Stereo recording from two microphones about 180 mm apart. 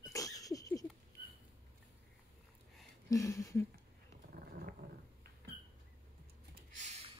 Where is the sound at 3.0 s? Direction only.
20° left (ahead or behind).